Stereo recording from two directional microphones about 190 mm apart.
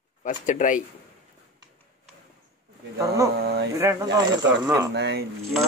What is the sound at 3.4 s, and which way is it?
Speech, 60° right (ahead or behind).